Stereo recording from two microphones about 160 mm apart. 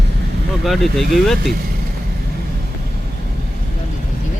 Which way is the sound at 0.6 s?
Centre (ahead or behind).